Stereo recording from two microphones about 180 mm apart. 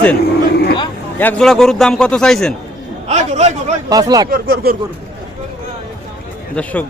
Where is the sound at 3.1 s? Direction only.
40° right (ahead or behind).